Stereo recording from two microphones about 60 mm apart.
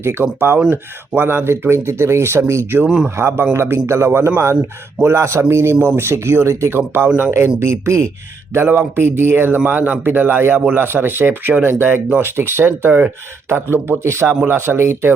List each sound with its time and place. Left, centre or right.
0.0 s speech: right
2.8 s a man's voice: centre
3.2 s speech: right
8.5 s speech: right